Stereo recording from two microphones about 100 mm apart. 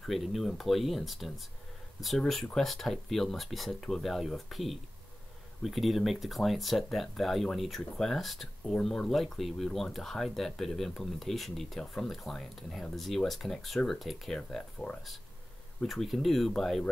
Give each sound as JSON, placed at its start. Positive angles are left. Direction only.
{"t": 0.0, "sound": "speech", "side_deg": 0}